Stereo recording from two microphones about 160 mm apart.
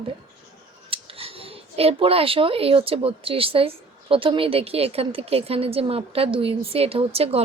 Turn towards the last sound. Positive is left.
turn(degrees=-40)  # may be behind; listen again after turning